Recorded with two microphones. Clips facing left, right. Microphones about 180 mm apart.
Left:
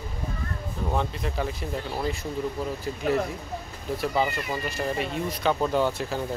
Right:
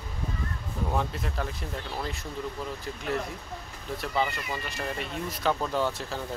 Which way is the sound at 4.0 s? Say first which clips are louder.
Left 3 dB; 5° left (ahead or behind).